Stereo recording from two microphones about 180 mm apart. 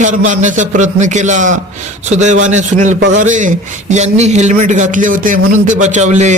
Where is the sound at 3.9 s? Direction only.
40° right (ahead or behind).